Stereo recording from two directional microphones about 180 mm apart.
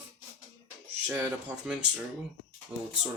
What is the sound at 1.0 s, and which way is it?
Speech, 10° right (ahead or behind).